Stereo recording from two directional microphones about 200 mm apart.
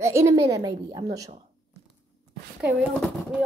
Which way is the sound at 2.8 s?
Centre (ahead or behind).